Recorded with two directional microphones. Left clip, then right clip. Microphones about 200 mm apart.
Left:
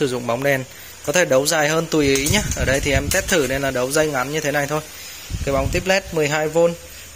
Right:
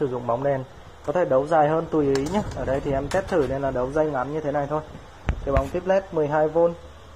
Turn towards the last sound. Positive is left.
turn(degrees=40)  # may be behind; listen again after turning